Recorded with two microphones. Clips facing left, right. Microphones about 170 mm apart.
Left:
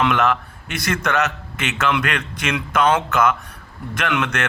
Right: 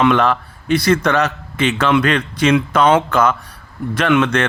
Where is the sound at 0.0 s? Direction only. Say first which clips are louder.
Right 4 dB; 30° right (ahead or behind).